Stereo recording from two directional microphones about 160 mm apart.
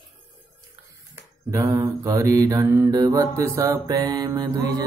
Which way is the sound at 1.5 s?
20° right (ahead or behind).